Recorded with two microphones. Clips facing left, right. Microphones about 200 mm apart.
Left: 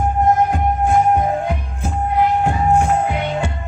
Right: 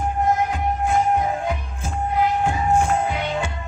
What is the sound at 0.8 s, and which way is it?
Music, 55° left (ahead or behind).